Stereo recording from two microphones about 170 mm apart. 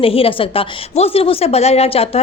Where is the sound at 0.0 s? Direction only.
35° left (ahead or behind).